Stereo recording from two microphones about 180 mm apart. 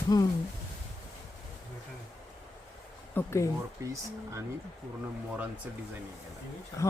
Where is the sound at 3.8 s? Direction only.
15° right (ahead or behind).